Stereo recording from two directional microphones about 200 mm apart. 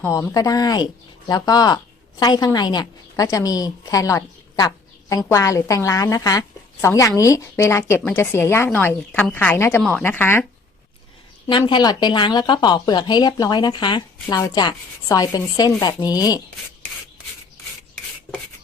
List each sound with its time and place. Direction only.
0.0 s a woman's voice: 15° left (ahead or behind)
11.4 s a woman's voice: 25° left (ahead or behind)